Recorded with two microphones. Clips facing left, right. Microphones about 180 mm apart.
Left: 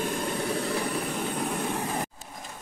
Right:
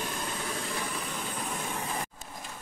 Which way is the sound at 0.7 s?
60° left (ahead or behind).